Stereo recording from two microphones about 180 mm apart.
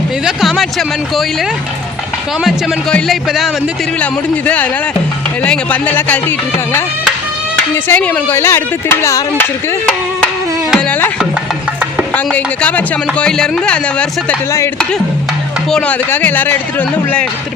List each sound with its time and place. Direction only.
0.3 s speech: centre (ahead or behind)
7.5 s speech: 10° left (ahead or behind)
10.7 s carnatic music: 5° left (ahead or behind)
12.1 s speech: 10° left (ahead or behind)
15.7 s speech: 10° left (ahead or behind)